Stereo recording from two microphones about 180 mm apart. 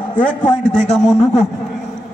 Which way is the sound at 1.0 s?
40° left (ahead or behind).